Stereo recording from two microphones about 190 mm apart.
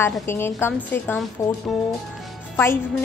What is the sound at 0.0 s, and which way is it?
A woman's voice, 10° left (ahead or behind).